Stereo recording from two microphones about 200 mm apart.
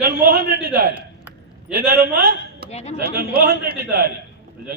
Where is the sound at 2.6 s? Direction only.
35° left (ahead or behind).